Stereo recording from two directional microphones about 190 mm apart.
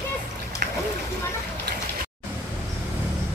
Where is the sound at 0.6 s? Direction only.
50° right (ahead or behind).